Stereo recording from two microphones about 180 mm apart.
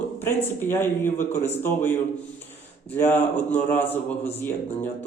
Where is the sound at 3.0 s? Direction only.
10° left (ahead or behind).